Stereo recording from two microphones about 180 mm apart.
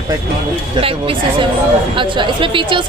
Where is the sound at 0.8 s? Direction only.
30° right (ahead or behind).